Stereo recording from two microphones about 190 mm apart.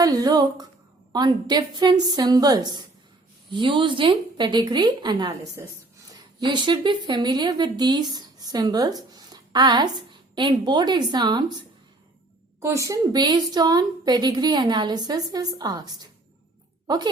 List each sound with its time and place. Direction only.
0.0 s a woman's voice: 20° right (ahead or behind)